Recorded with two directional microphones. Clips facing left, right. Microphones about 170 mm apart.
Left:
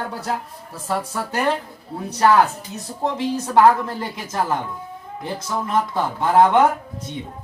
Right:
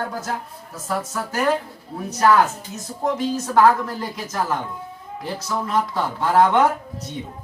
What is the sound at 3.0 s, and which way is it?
Speech, 30° left (ahead or behind).